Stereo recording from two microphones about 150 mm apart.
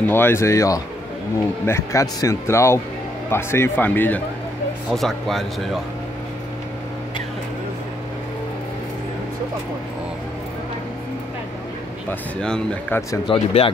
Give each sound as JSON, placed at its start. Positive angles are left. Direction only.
{"t": 0.0, "sound": "speech", "side_deg": 15}
{"t": 4.9, "sound": "speech", "side_deg": 0}
{"t": 12.1, "sound": "speech", "side_deg": 5}
{"t": 13.3, "sound": "speech", "side_deg": 40}